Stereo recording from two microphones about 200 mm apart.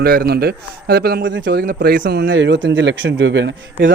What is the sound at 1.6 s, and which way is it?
A man's voice, 50° right (ahead or behind).